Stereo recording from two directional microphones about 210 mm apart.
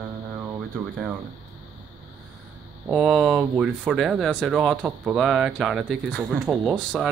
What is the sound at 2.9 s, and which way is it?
Speech, 5° right (ahead or behind).